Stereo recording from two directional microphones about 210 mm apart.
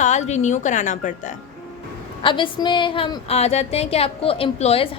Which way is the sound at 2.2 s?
25° left (ahead or behind).